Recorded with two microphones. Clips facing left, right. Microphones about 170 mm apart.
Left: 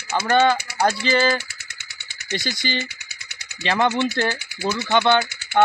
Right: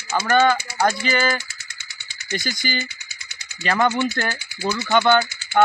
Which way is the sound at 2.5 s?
30° left (ahead or behind).